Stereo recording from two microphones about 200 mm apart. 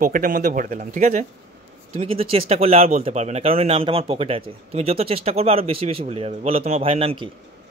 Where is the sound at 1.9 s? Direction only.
30° right (ahead or behind).